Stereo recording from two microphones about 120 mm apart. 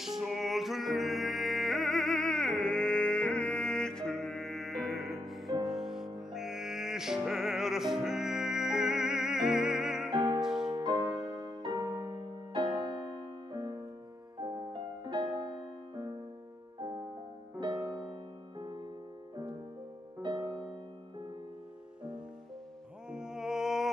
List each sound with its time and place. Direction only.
0.0 s music: 5° right (ahead or behind)
10.0 s music: 35° right (ahead or behind)
10.4 s music: 5° right (ahead or behind)
10.7 s music: 35° right (ahead or behind)
12.5 s music: 40° right (ahead or behind)
17.6 s music: 30° right (ahead or behind)
20.2 s music: 40° right (ahead or behind)
23.1 s music: 5° right (ahead or behind)